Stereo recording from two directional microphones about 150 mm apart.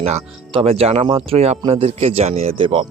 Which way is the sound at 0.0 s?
45° right (ahead or behind).